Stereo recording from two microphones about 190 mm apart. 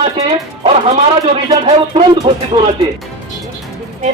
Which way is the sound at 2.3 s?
25° right (ahead or behind).